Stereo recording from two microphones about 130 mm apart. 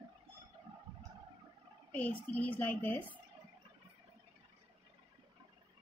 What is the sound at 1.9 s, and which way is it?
A woman's voice, 10° left (ahead or behind).